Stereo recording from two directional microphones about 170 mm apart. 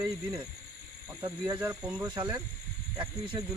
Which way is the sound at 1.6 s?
15° right (ahead or behind).